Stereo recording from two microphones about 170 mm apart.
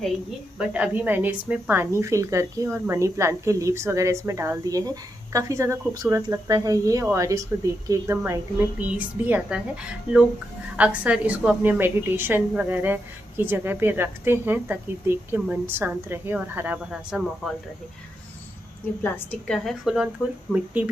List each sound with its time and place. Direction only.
0.6 s a woman's voice: 10° right (ahead or behind)
10.8 s a woman's voice: 10° right (ahead or behind)
19.0 s a woman's voice: 10° left (ahead or behind); by 20.9 s 10° right (ahead or behind)